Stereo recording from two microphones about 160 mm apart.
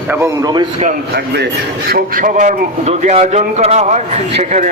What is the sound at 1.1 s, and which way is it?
A man's voice, 90° right.